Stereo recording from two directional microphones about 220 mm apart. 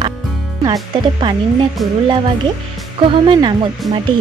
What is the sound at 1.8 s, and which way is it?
Speech, centre (ahead or behind).